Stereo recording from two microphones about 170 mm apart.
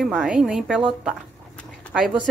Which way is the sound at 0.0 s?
5° right (ahead or behind).